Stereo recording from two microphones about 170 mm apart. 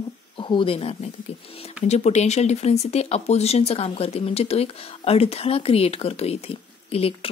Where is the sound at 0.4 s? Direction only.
30° left (ahead or behind).